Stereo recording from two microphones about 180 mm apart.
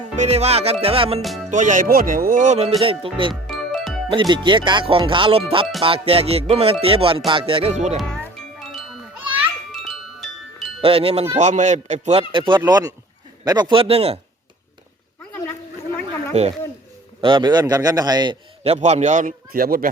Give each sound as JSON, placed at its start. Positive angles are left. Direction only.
{"t": 0.0, "sound": "music", "side_deg": -40}
{"t": 1.5, "sound": "a man's voice", "side_deg": -45}
{"t": 3.4, "sound": "music", "side_deg": 0}
{"t": 4.1, "sound": "a man's voice", "side_deg": -25}
{"t": 5.8, "sound": "music", "side_deg": -30}
{"t": 7.9, "sound": "wind chime", "side_deg": 0}
{"t": 10.8, "sound": "music", "side_deg": -30}
{"t": 12.3, "sound": "a man's voice", "side_deg": -25}
{"t": 16.3, "sound": "music", "side_deg": -40}
{"t": 17.2, "sound": "a man's voice", "side_deg": -25}
{"t": 19.5, "sound": "speech", "side_deg": -55}